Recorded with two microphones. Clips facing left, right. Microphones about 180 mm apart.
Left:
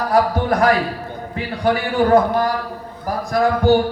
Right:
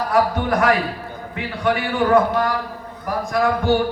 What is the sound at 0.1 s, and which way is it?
Speech, 35° left (ahead or behind).